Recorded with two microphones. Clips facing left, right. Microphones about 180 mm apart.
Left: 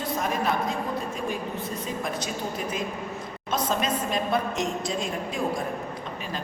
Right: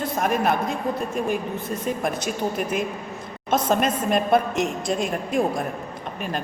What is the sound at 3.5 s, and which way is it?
A woman's voice, 60° right (ahead or behind).